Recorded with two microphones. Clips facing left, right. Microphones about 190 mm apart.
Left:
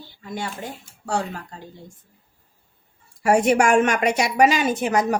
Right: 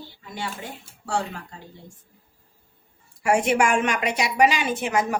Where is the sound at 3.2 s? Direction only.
40° left (ahead or behind).